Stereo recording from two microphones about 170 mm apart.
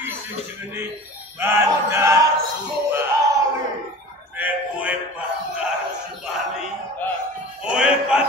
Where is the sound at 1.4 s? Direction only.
15° right (ahead or behind).